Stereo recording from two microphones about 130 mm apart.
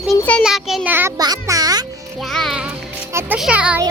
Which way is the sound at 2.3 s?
Centre (ahead or behind).